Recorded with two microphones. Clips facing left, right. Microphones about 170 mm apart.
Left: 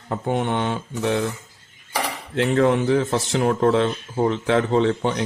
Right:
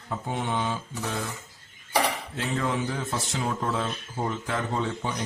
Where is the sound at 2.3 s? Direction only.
70° left (ahead or behind).